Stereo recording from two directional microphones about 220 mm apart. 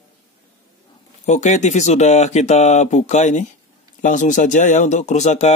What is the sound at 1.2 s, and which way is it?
Speech, 30° left (ahead or behind).